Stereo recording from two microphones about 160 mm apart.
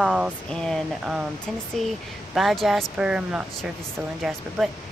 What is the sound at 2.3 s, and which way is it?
Speech, centre (ahead or behind).